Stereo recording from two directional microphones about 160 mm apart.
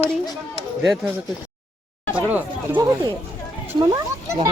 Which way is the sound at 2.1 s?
10° right (ahead or behind).